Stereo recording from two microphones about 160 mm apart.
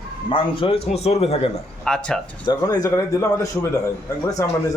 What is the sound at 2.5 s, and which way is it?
Speech, 20° left (ahead or behind).